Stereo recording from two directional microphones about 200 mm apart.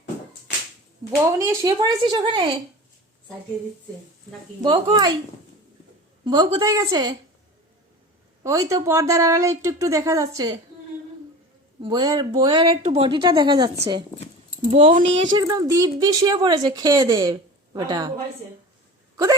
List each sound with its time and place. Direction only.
1.2 s speech: 15° right (ahead or behind)
4.6 s speech: 20° right (ahead or behind)
6.2 s speech: 20° right (ahead or behind)
8.4 s speech: 15° right (ahead or behind)
11.8 s speech: 20° right (ahead or behind)
14.1 s speech: 20° left (ahead or behind)
14.7 s speech: 30° right (ahead or behind)
15.4 s speech: 15° right (ahead or behind)